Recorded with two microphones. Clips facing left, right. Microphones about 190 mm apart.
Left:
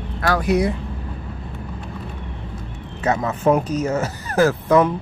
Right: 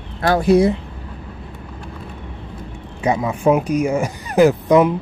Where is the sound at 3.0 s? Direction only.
10° right (ahead or behind).